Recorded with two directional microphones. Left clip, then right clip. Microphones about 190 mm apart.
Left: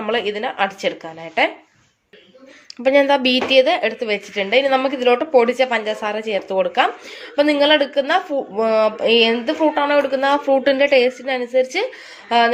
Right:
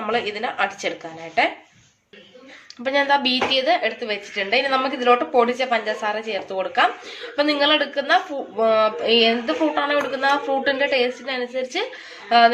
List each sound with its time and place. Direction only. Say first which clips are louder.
0.0 s a woman's voice: left 3 dB; 40° left (ahead or behind)
2.8 s a woman's voice: left 4 dB; 45° left (ahead or behind)